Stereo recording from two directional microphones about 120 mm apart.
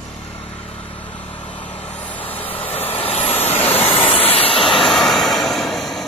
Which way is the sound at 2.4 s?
50° left (ahead or behind).